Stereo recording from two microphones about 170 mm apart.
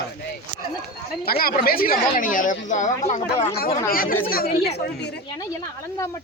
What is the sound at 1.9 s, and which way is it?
Speech, 50° left (ahead or behind).